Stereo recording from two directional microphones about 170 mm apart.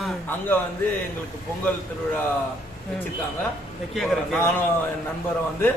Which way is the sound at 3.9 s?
Centre (ahead or behind).